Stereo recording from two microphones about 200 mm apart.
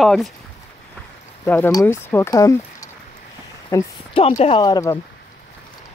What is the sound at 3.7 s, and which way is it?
Speech, 25° left (ahead or behind).